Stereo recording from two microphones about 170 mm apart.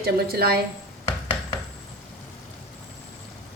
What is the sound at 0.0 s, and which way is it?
Speech, 65° right (ahead or behind).